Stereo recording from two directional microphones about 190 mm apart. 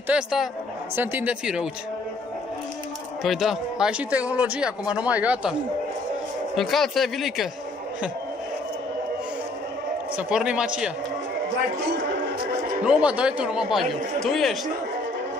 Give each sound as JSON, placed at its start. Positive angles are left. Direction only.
{"t": 0.1, "sound": "speech", "side_deg": 0}
{"t": 3.3, "sound": "speech", "side_deg": 0}
{"t": 10.1, "sound": "speech", "side_deg": -5}
{"t": 12.4, "sound": "music", "side_deg": -45}
{"t": 13.0, "sound": "speech", "side_deg": -5}